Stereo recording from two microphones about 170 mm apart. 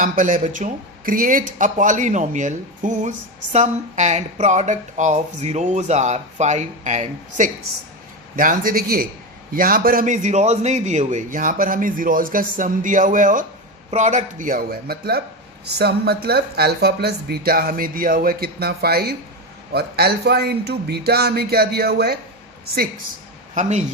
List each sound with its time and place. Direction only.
0.0 s speech: 50° right (ahead or behind)
11.3 s a man's voice: 55° right (ahead or behind)
23.6 s speech: 45° right (ahead or behind)